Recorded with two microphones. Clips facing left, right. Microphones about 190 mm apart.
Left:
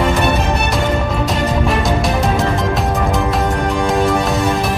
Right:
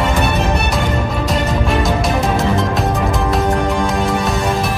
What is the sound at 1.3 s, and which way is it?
Music, centre (ahead or behind).